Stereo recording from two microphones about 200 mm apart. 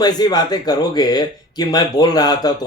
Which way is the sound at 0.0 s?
20° left (ahead or behind).